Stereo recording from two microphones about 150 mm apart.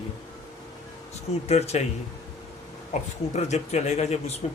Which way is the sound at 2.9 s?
50° left (ahead or behind).